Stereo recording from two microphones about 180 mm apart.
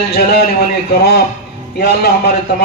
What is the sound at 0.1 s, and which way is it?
Speech, 65° left (ahead or behind).